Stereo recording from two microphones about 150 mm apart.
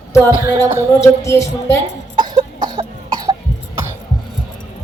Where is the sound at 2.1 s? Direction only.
30° right (ahead or behind).